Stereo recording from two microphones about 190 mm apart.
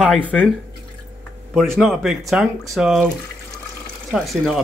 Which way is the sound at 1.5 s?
Centre (ahead or behind).